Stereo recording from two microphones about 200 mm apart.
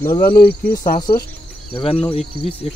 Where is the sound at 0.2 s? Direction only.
50° left (ahead or behind).